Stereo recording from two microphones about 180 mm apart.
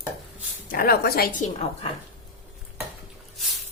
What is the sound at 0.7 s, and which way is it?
A woman's voice, 55° left (ahead or behind).